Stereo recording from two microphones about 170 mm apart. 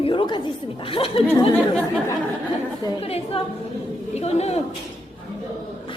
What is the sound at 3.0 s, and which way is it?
Speech, 35° left (ahead or behind).